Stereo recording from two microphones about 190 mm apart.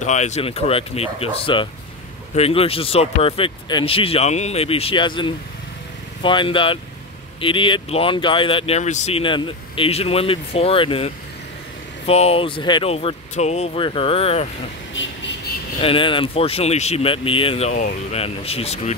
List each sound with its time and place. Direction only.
0.0 s speech: 40° left (ahead or behind)
12.1 s speech: 30° left (ahead or behind)
15.0 s insect: 70° left (ahead or behind)
15.8 s speech: 25° left (ahead or behind)